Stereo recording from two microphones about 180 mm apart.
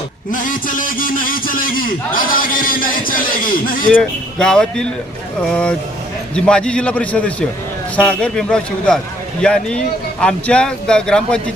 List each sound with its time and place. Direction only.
0.3 s a man's voice: 45° left (ahead or behind)
3.8 s a man's voice: 5° left (ahead or behind)